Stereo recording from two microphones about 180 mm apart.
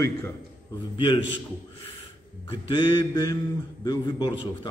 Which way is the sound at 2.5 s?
25° left (ahead or behind).